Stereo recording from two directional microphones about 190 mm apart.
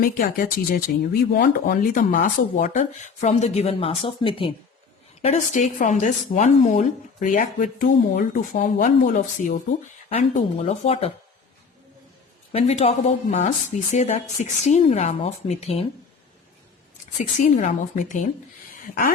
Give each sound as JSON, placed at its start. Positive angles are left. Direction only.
{"t": 0.0, "sound": "speech", "side_deg": 45}
{"t": 5.2, "sound": "a woman's voice", "side_deg": 40}
{"t": 10.1, "sound": "speech", "side_deg": 35}
{"t": 12.5, "sound": "speech", "side_deg": 35}
{"t": 17.2, "sound": "speech", "side_deg": 40}